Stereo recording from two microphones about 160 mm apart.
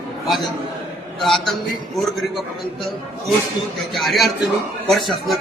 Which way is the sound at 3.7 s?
Centre (ahead or behind).